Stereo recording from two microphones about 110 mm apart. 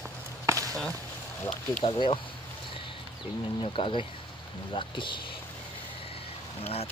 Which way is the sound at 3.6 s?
50° left (ahead or behind).